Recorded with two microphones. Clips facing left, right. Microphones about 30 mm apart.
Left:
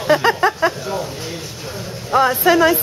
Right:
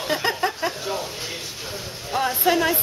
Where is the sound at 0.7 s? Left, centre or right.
Centre.